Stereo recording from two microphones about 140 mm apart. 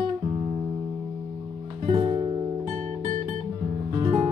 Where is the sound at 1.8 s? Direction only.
40° right (ahead or behind).